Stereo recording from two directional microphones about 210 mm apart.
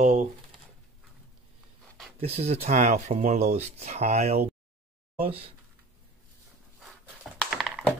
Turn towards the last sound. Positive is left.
turn(degrees=0)  # may be behind; listen again after turning